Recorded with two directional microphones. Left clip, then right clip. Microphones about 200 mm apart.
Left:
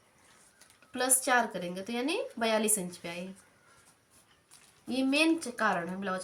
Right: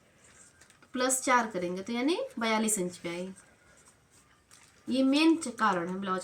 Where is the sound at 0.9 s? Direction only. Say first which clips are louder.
Right 1 dB; 30° left (ahead or behind).